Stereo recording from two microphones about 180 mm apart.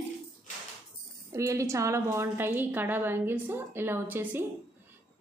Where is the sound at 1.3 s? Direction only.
15° right (ahead or behind).